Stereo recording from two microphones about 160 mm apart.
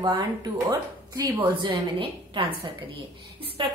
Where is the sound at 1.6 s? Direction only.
30° right (ahead or behind).